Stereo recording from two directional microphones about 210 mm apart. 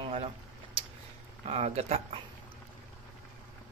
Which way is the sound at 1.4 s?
30° right (ahead or behind).